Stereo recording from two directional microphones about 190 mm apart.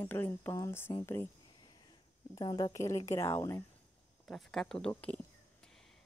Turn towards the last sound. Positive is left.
turn(degrees=5)  # may be behind; listen again after turning